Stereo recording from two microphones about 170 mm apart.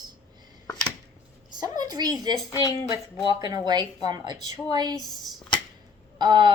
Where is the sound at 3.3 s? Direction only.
25° right (ahead or behind).